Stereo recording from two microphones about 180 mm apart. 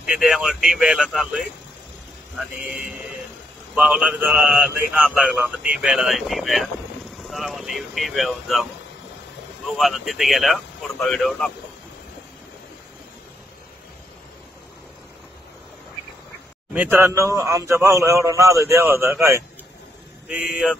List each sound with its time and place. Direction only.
0.0 s speech: 5° right (ahead or behind)
3.7 s speech: 5° right (ahead or behind)
9.8 s speech: centre (ahead or behind)
16.7 s a man's voice: 10° right (ahead or behind)